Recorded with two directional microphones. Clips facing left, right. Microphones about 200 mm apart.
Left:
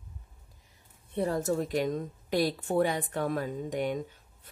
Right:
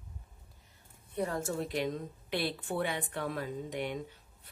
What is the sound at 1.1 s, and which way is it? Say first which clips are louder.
A woman's voice: left 5 dB; 35° left (ahead or behind).